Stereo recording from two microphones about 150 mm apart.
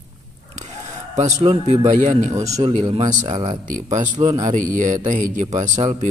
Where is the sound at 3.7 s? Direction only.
55° right (ahead or behind).